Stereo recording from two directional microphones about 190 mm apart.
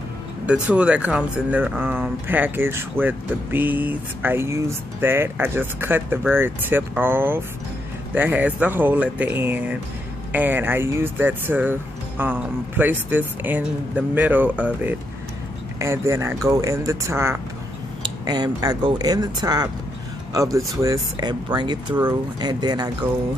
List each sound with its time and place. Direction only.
0.5 s speech: 5° right (ahead or behind); by 22.8 s 20° right (ahead or behind)